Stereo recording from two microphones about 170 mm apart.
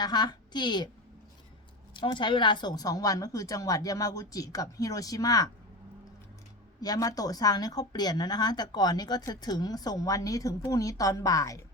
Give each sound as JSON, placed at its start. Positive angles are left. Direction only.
{"t": 0.0, "sound": "speech", "side_deg": 25}
{"t": 1.9, "sound": "speech", "side_deg": 30}
{"t": 6.8, "sound": "speech", "side_deg": 20}